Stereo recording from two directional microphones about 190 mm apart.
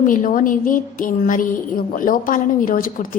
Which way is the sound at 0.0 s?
45° left (ahead or behind).